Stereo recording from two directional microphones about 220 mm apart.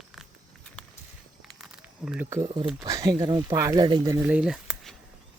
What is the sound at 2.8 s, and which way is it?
Speech, 15° right (ahead or behind).